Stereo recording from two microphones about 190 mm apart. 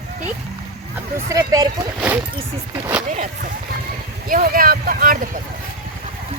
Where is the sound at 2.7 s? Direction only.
10° right (ahead or behind).